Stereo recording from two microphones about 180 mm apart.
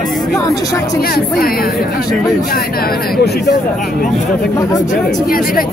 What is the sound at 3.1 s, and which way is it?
Speech, 60° left (ahead or behind).